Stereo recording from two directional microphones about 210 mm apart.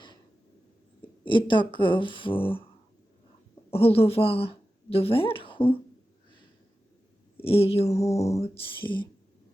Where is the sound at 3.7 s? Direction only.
30° left (ahead or behind).